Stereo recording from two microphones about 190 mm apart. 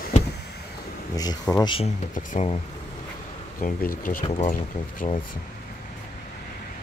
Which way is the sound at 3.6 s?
45° left (ahead or behind).